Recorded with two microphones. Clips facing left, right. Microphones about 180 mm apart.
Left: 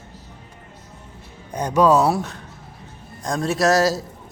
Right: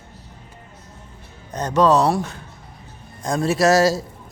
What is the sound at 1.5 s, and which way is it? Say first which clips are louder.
A man's voice: even; 10° left (ahead or behind).